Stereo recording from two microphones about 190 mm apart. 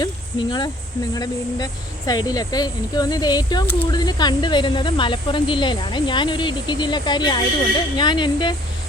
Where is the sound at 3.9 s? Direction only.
20° left (ahead or behind).